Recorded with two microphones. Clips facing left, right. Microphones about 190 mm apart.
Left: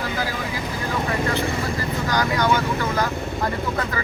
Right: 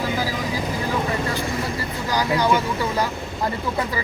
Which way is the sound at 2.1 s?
10° right (ahead or behind).